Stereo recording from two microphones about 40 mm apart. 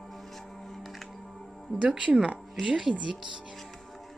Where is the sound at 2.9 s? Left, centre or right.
Right.